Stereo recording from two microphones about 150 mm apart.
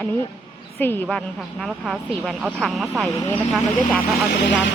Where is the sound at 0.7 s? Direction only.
15° left (ahead or behind).